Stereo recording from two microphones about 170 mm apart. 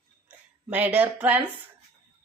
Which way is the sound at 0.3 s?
10° right (ahead or behind).